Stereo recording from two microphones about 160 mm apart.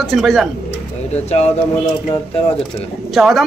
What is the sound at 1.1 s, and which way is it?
Speech, 40° left (ahead or behind).